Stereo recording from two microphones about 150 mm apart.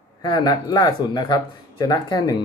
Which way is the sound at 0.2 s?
25° left (ahead or behind).